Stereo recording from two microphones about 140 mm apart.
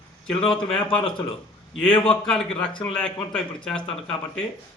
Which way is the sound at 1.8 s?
5° left (ahead or behind).